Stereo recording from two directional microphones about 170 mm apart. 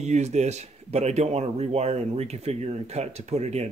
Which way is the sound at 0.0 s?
40° right (ahead or behind).